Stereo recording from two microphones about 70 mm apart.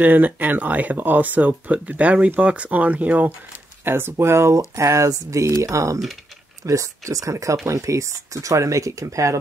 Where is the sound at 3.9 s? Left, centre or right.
Right.